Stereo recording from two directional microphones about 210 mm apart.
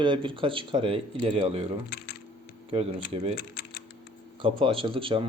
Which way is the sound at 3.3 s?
45° left (ahead or behind).